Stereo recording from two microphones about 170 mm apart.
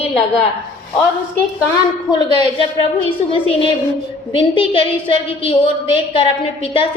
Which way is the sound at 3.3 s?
35° left (ahead or behind).